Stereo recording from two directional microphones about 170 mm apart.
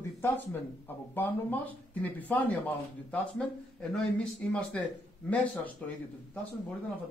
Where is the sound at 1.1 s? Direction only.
10° left (ahead or behind).